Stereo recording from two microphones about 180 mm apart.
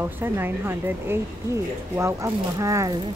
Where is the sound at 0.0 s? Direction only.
10° right (ahead or behind).